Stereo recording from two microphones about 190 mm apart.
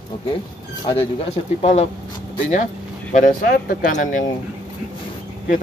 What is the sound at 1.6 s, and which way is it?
Speech, 35° left (ahead or behind).